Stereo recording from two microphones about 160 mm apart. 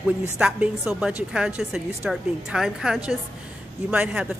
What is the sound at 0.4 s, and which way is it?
A woman's voice, 5° right (ahead or behind).